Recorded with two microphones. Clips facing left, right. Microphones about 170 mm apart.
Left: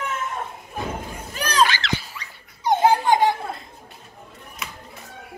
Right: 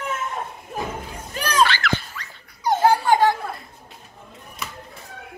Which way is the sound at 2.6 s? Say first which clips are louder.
Even; 20° left (ahead or behind).